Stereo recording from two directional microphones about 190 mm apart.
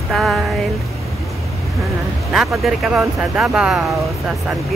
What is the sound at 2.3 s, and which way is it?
Speech, centre (ahead or behind).